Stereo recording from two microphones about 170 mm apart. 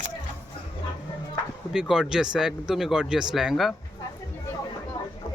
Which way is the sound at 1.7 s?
5° right (ahead or behind).